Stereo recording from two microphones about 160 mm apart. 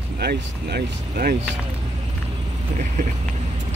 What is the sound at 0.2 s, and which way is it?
Speech, 90° right.